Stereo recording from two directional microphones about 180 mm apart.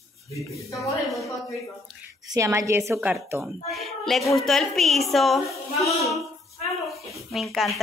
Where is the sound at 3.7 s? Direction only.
Centre (ahead or behind).